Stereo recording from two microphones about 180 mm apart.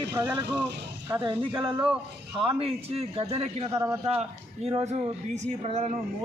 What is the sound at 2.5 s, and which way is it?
A man's voice, 30° right (ahead or behind).